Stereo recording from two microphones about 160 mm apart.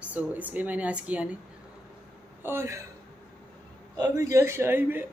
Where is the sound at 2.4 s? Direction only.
15° right (ahead or behind).